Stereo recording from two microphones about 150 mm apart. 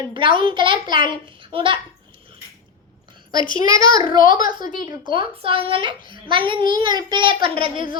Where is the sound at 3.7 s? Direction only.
25° right (ahead or behind).